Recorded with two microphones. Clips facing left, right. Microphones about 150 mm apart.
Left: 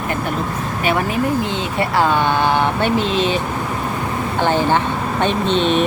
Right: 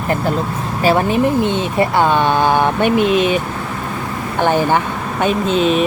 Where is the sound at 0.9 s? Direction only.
25° right (ahead or behind).